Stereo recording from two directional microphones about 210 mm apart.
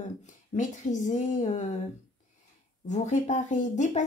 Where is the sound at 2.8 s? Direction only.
35° left (ahead or behind).